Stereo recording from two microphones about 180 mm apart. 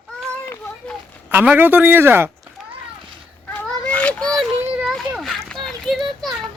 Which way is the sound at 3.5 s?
10° left (ahead or behind).